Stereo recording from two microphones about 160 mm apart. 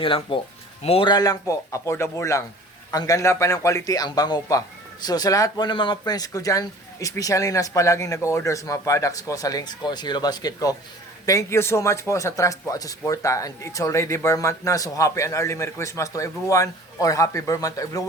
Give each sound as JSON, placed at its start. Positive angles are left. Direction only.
{"t": 0.0, "sound": "speech", "side_deg": 35}